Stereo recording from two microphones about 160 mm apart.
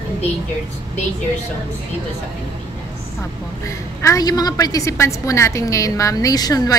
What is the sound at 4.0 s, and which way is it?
A woman's voice, 20° left (ahead or behind).